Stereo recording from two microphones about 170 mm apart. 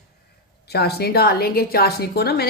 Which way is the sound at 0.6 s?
70° left (ahead or behind).